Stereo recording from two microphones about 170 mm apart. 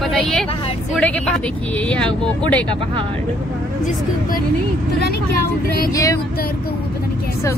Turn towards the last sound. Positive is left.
turn(degrees=20)  # may be behind; listen again after turning